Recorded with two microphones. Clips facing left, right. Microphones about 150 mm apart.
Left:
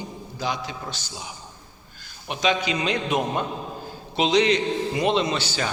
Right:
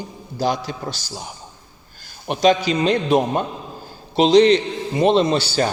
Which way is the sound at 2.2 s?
40° right (ahead or behind).